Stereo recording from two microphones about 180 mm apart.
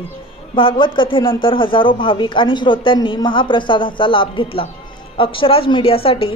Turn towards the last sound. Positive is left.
turn(degrees=30)  # may be behind; listen again after turning